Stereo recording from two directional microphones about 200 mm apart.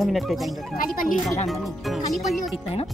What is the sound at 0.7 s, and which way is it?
Speech, 45° left (ahead or behind).